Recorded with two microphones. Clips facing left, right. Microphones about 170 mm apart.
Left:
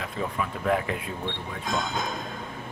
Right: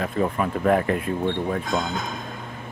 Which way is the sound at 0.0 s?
50° right (ahead or behind).